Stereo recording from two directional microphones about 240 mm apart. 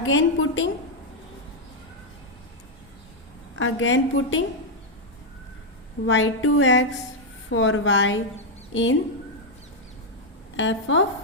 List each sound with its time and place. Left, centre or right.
0.0 s a woman's voice: left
3.5 s a woman's voice: left
6.1 s a woman's voice: left
10.6 s a woman's voice: left